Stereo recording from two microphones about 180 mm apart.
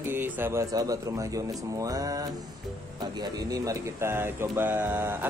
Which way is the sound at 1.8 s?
20° right (ahead or behind).